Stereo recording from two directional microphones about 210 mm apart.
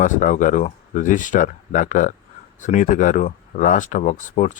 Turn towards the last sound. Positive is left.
turn(degrees=35)  # may be behind; listen again after turning